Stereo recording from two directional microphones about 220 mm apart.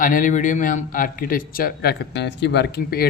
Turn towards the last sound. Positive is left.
turn(degrees=45)  # may be behind; listen again after turning